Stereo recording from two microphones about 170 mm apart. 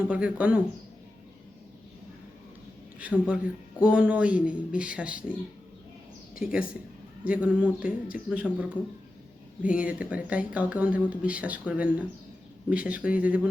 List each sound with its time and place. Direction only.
0.1 s speech: 5° right (ahead or behind)
3.0 s speech: 10° right (ahead or behind)
6.4 s speech: 5° right (ahead or behind)
9.6 s speech: 5° right (ahead or behind)